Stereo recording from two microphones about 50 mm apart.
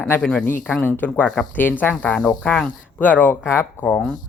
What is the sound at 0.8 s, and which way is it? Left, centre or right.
Speech, left.